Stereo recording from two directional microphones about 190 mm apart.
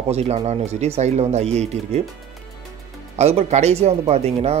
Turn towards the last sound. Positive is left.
turn(degrees=-35)  # may be behind; listen again after turning